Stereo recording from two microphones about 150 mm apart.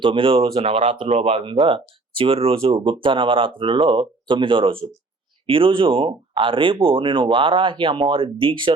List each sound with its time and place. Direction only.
0.0 s speech: 35° right (ahead or behind)